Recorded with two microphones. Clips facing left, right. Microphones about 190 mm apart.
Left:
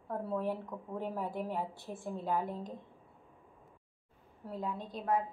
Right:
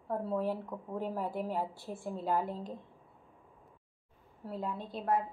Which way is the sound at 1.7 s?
20° left (ahead or behind).